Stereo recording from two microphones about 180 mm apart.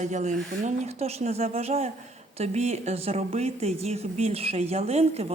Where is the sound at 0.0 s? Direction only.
40° right (ahead or behind).